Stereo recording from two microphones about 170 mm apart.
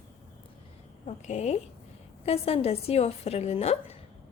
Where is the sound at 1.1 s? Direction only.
40° left (ahead or behind).